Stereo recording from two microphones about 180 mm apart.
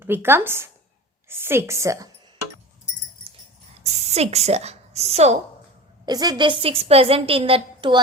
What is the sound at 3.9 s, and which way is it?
A woman's voice, 35° right (ahead or behind).